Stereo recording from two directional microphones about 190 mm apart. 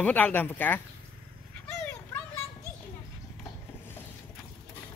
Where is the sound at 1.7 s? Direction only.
10° left (ahead or behind).